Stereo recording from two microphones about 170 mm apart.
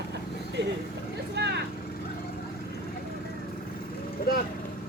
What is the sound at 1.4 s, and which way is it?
Vehicle, 80° right.